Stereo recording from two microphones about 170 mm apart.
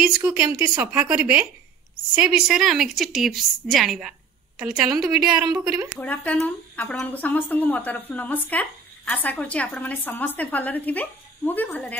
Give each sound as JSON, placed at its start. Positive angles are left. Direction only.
{"t": 0.2, "sound": "a woman's voice", "side_deg": -10}
{"t": 5.3, "sound": "a woman's voice", "side_deg": -25}
{"t": 5.9, "sound": "a woman's voice", "side_deg": 10}